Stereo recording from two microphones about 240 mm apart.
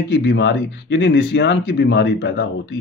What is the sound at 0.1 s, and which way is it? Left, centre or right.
Speech, left.